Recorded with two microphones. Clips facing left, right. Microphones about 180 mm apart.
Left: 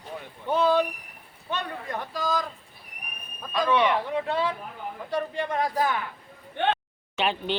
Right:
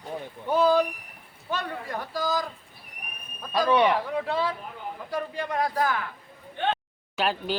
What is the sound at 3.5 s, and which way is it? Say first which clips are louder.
Speech: right 2 dB; 35° right (ahead or behind).